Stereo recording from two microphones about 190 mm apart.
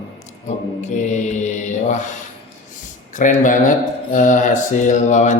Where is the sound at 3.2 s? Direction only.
45° left (ahead or behind).